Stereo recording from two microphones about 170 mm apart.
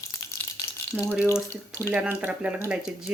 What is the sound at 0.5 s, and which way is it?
Frying, 5° right (ahead or behind).